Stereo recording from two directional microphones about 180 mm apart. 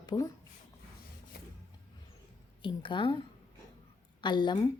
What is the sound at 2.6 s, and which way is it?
A woman's voice, 25° left (ahead or behind).